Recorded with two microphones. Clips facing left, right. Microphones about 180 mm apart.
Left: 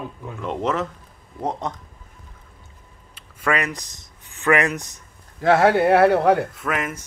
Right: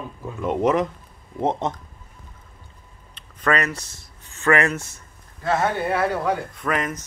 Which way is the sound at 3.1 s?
10° left (ahead or behind).